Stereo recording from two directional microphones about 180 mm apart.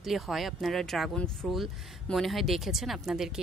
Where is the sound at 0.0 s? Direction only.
Centre (ahead or behind).